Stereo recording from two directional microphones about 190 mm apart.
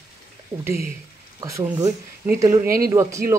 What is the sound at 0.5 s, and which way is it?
Speech, 10° right (ahead or behind).